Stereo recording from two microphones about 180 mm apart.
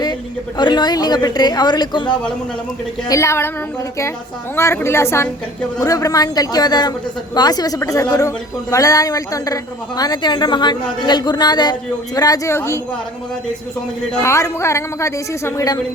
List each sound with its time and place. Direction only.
0.0 s a woman's voice: 25° left (ahead or behind)
4.5 s a woman's voice: 15° left (ahead or behind)
14.2 s a woman's voice: 15° left (ahead or behind)